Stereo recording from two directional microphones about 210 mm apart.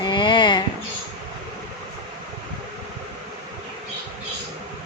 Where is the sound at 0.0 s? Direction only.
20° left (ahead or behind).